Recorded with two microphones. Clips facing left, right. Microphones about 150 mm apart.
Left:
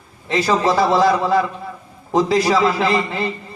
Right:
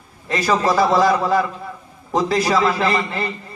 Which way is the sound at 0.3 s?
Centre (ahead or behind).